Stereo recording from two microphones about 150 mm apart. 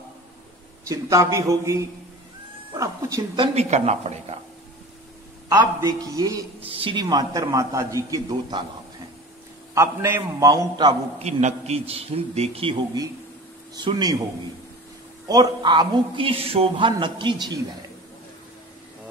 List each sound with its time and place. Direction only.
0.8 s a man's voice: 20° right (ahead or behind)
3.5 s speech: 45° right (ahead or behind)
5.8 s a man's voice: 25° right (ahead or behind)
6.6 s a man's voice: 35° right (ahead or behind)
9.8 s a man's voice: 15° right (ahead or behind)
11.1 s a man's voice: 45° right (ahead or behind)
13.8 s a man's voice: 30° right (ahead or behind)
15.2 s a man's voice: 30° right (ahead or behind)